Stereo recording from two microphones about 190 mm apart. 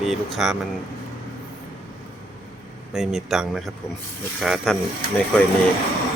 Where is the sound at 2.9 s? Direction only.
Centre (ahead or behind).